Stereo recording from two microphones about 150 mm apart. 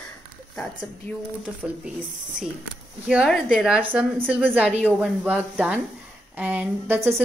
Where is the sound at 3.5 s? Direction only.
5° right (ahead or behind).